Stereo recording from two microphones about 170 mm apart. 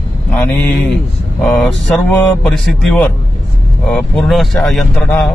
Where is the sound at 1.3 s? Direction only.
5° left (ahead or behind).